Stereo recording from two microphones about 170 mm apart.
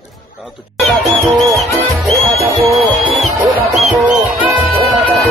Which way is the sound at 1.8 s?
10° right (ahead or behind).